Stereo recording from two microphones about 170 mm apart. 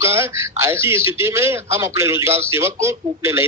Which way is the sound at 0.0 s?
15° right (ahead or behind).